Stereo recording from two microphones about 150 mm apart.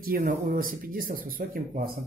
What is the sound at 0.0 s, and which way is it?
Speech, 70° right (ahead or behind).